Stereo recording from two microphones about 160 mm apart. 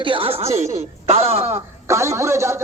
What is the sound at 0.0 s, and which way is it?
A woman's voice, 35° right (ahead or behind).